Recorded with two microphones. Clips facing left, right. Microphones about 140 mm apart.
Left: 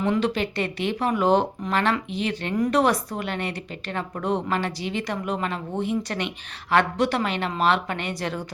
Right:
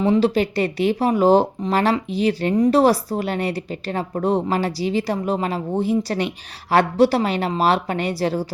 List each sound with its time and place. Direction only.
0.0 s a woman's voice: 30° right (ahead or behind)